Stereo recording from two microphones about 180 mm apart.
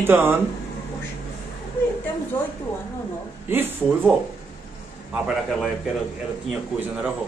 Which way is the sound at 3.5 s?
10° right (ahead or behind).